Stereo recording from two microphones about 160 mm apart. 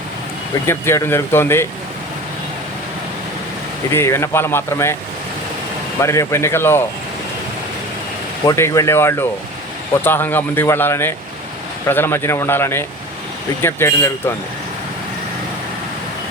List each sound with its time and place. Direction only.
0.7 s speech: 15° left (ahead or behind)
3.9 s speech: 15° left (ahead or behind)
6.0 s speech: 15° left (ahead or behind)
8.4 s speech: 20° left (ahead or behind)